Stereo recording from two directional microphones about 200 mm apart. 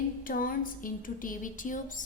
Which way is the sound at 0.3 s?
45° left (ahead or behind).